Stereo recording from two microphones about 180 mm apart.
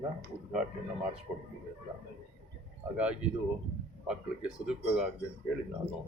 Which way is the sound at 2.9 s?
5° right (ahead or behind).